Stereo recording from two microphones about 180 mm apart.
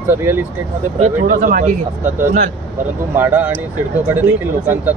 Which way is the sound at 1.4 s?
50° right (ahead or behind).